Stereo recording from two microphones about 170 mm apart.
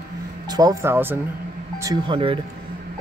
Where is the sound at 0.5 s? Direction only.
20° right (ahead or behind).